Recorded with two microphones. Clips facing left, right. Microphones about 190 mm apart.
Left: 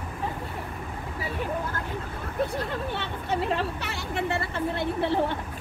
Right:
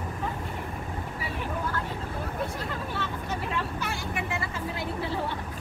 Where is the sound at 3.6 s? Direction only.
65° left (ahead or behind).